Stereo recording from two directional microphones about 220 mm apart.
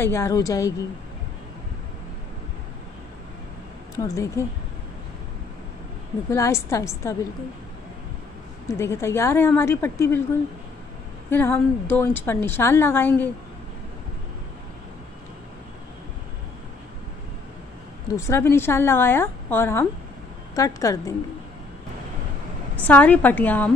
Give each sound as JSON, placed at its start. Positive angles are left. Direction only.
{"t": 0.0, "sound": "a woman's voice", "side_deg": 10}
{"t": 3.9, "sound": "speech", "side_deg": 15}
{"t": 6.3, "sound": "a woman's voice", "side_deg": 15}
{"t": 8.6, "sound": "a woman's voice", "side_deg": 10}
{"t": 11.2, "sound": "a woman's voice", "side_deg": 10}
{"t": 18.1, "sound": "a woman's voice", "side_deg": 15}
{"t": 22.8, "sound": "a woman's voice", "side_deg": 5}